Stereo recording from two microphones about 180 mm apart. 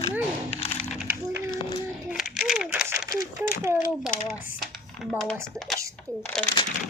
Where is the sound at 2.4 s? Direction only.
5° right (ahead or behind).